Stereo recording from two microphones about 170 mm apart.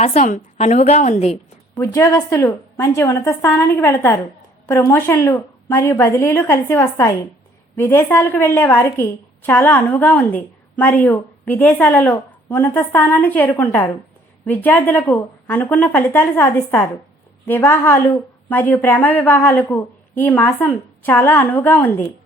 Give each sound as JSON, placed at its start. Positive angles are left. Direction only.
{"t": 0.0, "sound": "a woman's voice", "side_deg": 40}
{"t": 1.8, "sound": "a woman's voice", "side_deg": 15}